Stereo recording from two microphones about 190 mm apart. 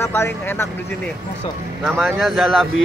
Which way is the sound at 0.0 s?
15° left (ahead or behind).